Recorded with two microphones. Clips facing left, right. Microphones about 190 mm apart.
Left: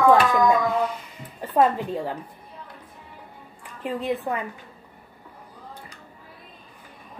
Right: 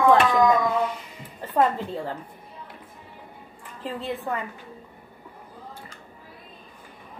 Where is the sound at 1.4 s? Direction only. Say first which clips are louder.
Left 2 dB; 15° left (ahead or behind).